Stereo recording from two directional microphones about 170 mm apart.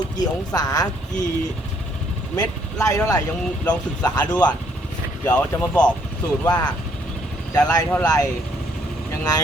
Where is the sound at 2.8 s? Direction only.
20° left (ahead or behind).